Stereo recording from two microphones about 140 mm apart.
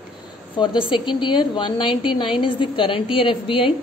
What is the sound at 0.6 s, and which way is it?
A woman's voice, 35° left (ahead or behind).